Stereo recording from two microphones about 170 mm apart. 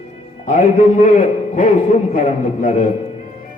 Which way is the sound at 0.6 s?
50° left (ahead or behind).